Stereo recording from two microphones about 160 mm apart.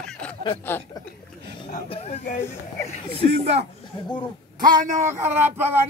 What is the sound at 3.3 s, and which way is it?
Speech, 40° right (ahead or behind).